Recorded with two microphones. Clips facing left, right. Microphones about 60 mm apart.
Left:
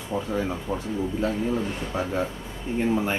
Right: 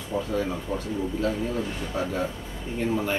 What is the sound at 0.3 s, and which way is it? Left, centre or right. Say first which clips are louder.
A man's voice: left 1 dB; centre.